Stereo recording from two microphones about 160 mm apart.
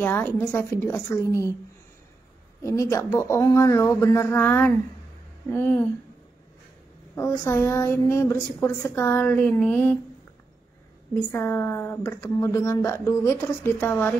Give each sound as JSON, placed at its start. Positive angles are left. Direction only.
{"t": 0.0, "sound": "speech", "side_deg": 15}
{"t": 2.6, "sound": "speech", "side_deg": 20}
{"t": 7.2, "sound": "speech", "side_deg": 15}
{"t": 11.3, "sound": "speech", "side_deg": 15}